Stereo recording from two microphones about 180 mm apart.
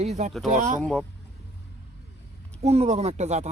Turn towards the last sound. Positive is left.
turn(degrees=-40)  # may be behind; listen again after turning